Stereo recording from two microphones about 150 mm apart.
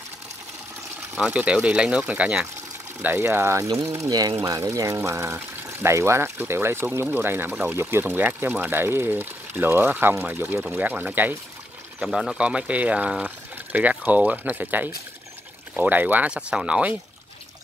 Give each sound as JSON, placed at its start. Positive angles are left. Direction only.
{"t": 1.1, "sound": "speech", "side_deg": -5}